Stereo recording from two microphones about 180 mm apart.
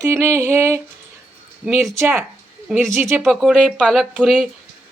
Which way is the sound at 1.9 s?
15° right (ahead or behind).